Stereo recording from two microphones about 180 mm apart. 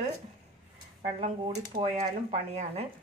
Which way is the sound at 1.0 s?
30° right (ahead or behind).